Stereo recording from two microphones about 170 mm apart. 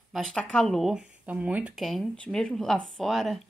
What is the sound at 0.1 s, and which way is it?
Speech, 5° left (ahead or behind).